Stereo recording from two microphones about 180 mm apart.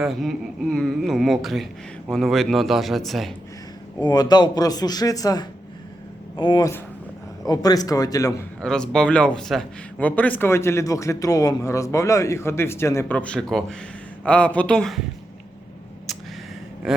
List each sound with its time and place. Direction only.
0.0 s speech: centre (ahead or behind)
4.0 s speech: 20° left (ahead or behind)
8.6 s a man's voice: 5° left (ahead or behind)